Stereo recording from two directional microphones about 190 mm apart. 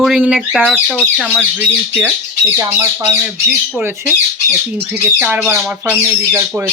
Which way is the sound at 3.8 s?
10° right (ahead or behind).